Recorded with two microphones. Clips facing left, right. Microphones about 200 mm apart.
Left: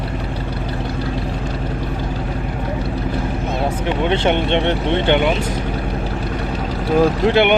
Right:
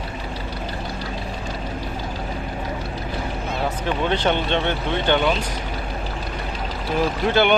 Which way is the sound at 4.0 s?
20° left (ahead or behind).